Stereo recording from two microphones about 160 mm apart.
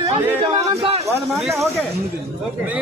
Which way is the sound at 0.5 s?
40° right (ahead or behind).